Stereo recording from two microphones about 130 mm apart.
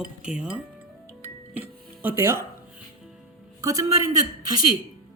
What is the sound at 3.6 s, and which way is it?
Speech, 25° right (ahead or behind).